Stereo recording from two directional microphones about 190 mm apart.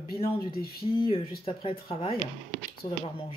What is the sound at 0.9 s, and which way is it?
Speech, 30° left (ahead or behind).